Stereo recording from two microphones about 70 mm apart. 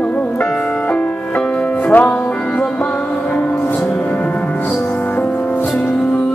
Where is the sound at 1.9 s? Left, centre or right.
Centre.